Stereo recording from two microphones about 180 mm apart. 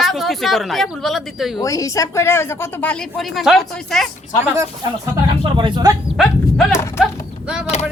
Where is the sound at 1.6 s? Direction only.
20° left (ahead or behind); by 4.1 s centre (ahead or behind).